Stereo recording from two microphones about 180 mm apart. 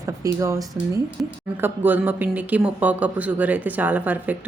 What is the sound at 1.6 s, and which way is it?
Speech, 10° right (ahead or behind).